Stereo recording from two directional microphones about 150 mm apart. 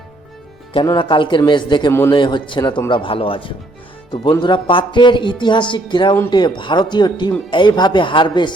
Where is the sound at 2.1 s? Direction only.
30° left (ahead or behind).